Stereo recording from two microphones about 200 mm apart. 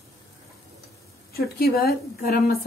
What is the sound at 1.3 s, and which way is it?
A woman's voice, 50° left (ahead or behind).